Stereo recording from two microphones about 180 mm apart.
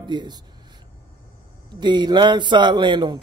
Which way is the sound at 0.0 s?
25° right (ahead or behind).